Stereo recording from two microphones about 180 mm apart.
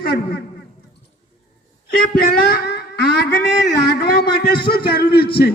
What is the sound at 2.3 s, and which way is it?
A man's voice, 60° left (ahead or behind).